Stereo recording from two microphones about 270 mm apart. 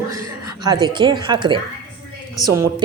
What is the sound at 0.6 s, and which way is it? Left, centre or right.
A woman's voice, centre.